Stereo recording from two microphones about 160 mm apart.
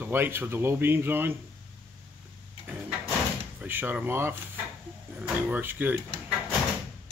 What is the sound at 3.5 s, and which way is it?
Speech, 10° right (ahead or behind).